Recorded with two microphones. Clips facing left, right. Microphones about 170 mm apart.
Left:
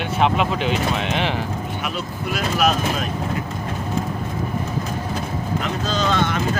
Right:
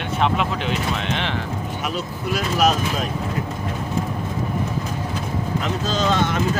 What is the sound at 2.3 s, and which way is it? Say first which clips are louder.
Speech: right 1 dB; 35° right (ahead or behind).